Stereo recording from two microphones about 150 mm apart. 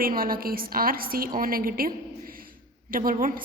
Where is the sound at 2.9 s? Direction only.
70° right (ahead or behind).